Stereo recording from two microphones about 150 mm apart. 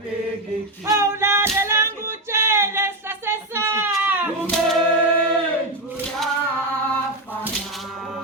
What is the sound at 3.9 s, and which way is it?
Goat, 10° right (ahead or behind).